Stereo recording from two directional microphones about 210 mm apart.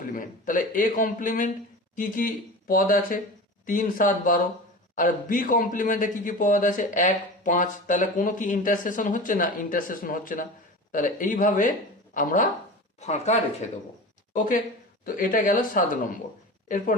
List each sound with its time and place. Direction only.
0.0 s speech: 40° left (ahead or behind)